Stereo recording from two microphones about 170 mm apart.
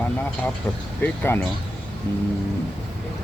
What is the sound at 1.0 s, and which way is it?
Speech, 10° left (ahead or behind).